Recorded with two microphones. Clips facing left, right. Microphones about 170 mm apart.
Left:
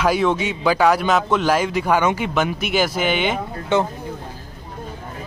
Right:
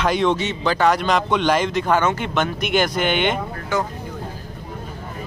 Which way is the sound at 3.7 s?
25° left (ahead or behind).